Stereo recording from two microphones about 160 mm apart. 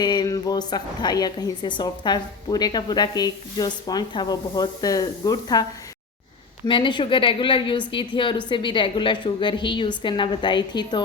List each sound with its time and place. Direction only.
0.0 s a sound: 25° left (ahead or behind)
0.7 s a woman's voice: 25° left (ahead or behind)
6.7 s a woman's voice: 30° left (ahead or behind)